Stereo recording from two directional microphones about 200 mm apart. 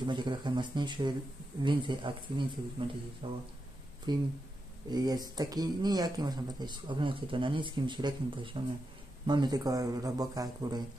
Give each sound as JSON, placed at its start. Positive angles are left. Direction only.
{"t": 0.0, "sound": "speech", "side_deg": -20}